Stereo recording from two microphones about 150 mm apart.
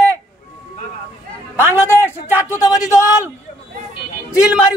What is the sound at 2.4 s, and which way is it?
Speech, 25° left (ahead or behind).